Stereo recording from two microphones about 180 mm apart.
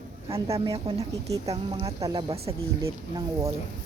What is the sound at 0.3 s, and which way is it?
A woman's voice, 35° right (ahead or behind).